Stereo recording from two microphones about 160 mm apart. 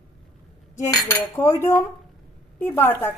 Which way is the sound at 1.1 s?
15° left (ahead or behind).